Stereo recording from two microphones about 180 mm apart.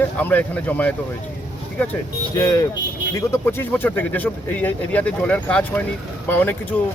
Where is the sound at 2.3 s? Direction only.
20° left (ahead or behind).